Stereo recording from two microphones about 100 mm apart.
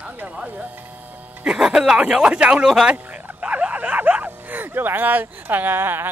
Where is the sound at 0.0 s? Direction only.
15° right (ahead or behind).